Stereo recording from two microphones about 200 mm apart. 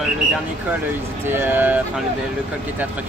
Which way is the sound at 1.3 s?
10° right (ahead or behind).